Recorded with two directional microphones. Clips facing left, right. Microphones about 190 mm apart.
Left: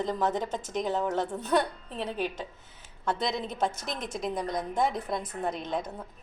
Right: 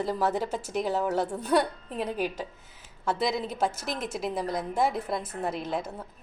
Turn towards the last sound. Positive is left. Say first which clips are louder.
# right 1 dB
turn(degrees=-5)  # may be behind; listen again after turning